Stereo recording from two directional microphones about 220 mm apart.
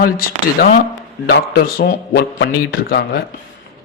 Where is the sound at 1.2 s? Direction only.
45° left (ahead or behind).